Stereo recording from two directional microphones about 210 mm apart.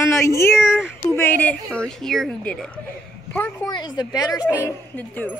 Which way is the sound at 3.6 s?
20° left (ahead or behind).